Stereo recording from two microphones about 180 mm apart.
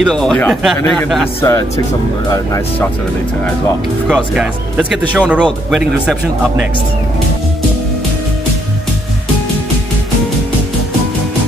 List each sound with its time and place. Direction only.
0.0 s speech: 5° left (ahead or behind)
1.4 s speech: 15° left (ahead or behind)
4.1 s speech: 5° right (ahead or behind)